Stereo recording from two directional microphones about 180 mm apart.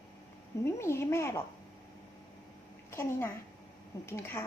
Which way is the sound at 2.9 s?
15° left (ahead or behind).